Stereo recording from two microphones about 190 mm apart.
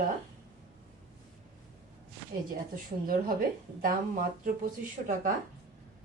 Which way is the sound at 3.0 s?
50° right (ahead or behind).